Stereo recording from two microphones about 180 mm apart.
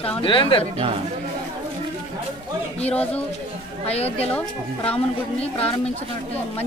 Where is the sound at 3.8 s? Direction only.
35° left (ahead or behind).